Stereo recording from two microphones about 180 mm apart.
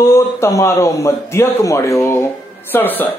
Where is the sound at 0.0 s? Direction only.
15° left (ahead or behind).